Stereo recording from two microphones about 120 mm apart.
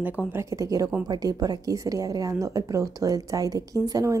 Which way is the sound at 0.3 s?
25° right (ahead or behind).